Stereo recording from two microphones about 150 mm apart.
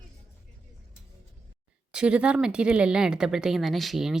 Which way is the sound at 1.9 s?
5° right (ahead or behind).